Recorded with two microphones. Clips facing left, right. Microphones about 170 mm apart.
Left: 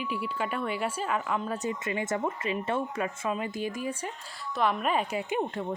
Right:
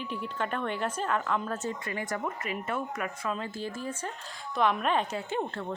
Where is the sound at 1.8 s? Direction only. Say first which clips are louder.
Left 4 dB; 25° left (ahead or behind).